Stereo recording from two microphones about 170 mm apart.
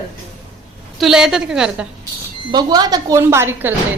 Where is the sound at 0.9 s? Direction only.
Centre (ahead or behind).